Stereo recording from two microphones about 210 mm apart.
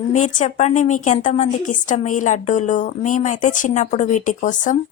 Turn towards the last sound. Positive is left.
turn(degrees=35)  # may be behind; listen again after turning